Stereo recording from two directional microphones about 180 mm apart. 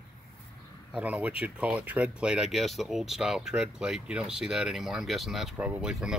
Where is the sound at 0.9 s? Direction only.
10° right (ahead or behind).